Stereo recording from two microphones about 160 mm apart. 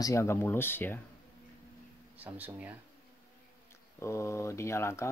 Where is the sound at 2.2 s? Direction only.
10° right (ahead or behind).